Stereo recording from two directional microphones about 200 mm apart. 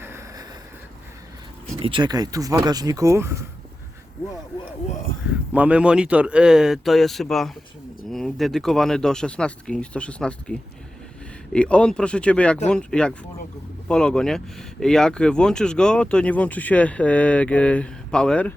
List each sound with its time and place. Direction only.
0.0 s vehicle: 15° right (ahead or behind)
1.8 s speech: 25° right (ahead or behind)
5.5 s speech: 5° right (ahead or behind)